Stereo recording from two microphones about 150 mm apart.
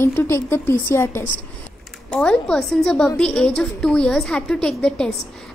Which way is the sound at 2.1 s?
5° left (ahead or behind).